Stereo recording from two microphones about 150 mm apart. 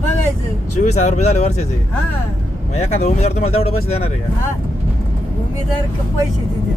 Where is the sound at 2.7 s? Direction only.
45° left (ahead or behind).